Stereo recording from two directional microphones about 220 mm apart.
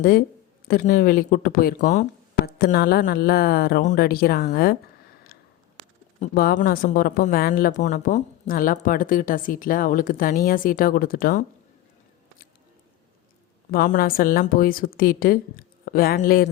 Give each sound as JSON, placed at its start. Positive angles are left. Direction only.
{"t": 0.7, "sound": "speech", "side_deg": 40}
{"t": 2.5, "sound": "speech", "side_deg": 45}
{"t": 6.1, "sound": "speech", "side_deg": 45}
{"t": 13.7, "sound": "speech", "side_deg": 40}